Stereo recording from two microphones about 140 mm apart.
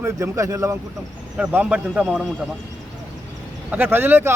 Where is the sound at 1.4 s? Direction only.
10° right (ahead or behind).